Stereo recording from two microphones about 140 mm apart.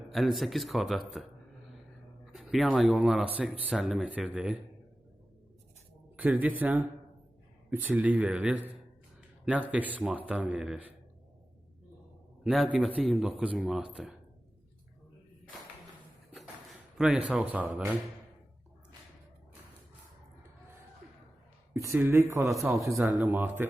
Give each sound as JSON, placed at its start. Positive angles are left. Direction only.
{"t": 0.1, "sound": "a man's voice", "side_deg": 0}
{"t": 2.3, "sound": "a man's voice", "side_deg": 0}
{"t": 6.1, "sound": "a man's voice", "side_deg": -10}
{"t": 9.7, "sound": "a man's voice", "side_deg": -10}
{"t": 12.4, "sound": "a man's voice", "side_deg": -5}
{"t": 17.0, "sound": "a man's voice", "side_deg": -5}
{"t": 21.7, "sound": "a man's voice", "side_deg": -20}